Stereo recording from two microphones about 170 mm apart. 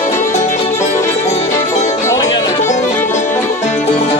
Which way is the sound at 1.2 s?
40° left (ahead or behind).